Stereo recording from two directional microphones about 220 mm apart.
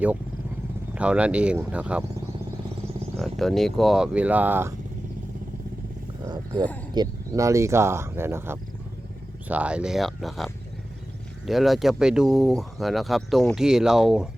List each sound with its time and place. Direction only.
0.9 s speech: 5° right (ahead or behind)
3.2 s speech: centre (ahead or behind)
6.2 s speech: 20° right (ahead or behind); by 14.3 s centre (ahead or behind)